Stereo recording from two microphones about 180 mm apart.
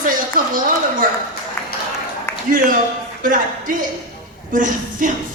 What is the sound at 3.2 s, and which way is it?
A woman's voice, 50° right (ahead or behind).